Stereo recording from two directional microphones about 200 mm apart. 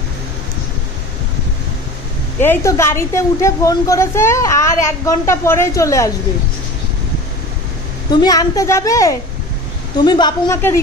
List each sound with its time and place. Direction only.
2.4 s a woman's voice: 10° left (ahead or behind)
8.1 s a woman's voice: 20° left (ahead or behind)